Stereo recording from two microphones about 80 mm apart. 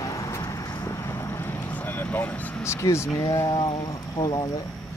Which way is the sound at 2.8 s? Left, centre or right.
Left.